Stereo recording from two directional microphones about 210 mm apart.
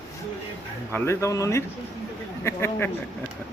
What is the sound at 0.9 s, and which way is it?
A man's voice, 10° left (ahead or behind).